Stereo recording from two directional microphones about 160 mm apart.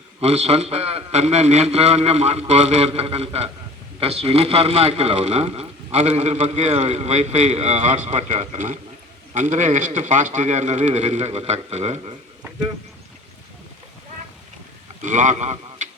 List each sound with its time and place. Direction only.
0.2 s speech: 40° right (ahead or behind)
15.0 s a man's voice: 50° right (ahead or behind)